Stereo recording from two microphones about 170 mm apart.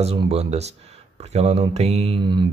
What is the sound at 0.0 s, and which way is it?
Speech, 35° right (ahead or behind).